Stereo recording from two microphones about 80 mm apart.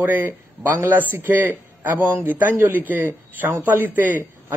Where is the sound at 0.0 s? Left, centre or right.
Right.